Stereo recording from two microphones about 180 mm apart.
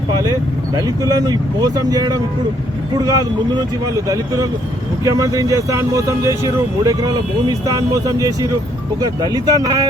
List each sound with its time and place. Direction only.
0.8 s speech: 20° right (ahead or behind)
5.0 s speech: 20° right (ahead or behind)